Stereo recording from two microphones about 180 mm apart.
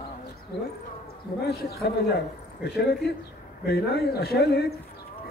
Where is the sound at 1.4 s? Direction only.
60° left (ahead or behind).